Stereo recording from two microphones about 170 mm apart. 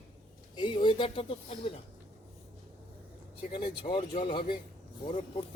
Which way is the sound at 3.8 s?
30° left (ahead or behind).